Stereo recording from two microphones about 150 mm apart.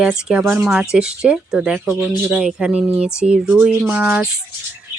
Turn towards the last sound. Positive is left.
turn(degrees=-10)  # may be behind; listen again after turning